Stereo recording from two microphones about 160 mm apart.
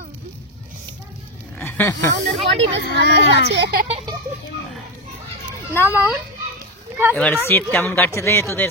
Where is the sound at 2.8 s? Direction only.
90° left.